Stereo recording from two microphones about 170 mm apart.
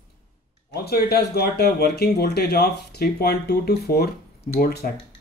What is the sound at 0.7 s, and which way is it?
Speech, 70° left (ahead or behind).